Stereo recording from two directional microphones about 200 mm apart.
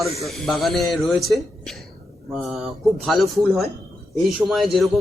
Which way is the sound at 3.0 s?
Centre (ahead or behind).